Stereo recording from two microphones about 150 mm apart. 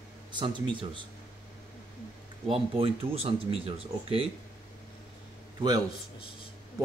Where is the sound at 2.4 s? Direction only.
40° right (ahead or behind).